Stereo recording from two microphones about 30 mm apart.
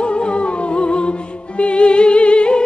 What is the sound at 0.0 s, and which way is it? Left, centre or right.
Music, left.